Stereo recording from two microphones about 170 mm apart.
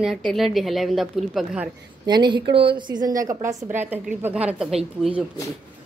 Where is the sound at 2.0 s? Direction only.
25° right (ahead or behind); by 5.2 s centre (ahead or behind).